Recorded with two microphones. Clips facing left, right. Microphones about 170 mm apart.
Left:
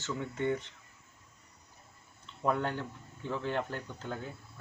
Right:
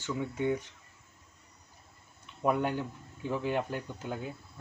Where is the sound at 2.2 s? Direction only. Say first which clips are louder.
Right 2 dB; 15° right (ahead or behind).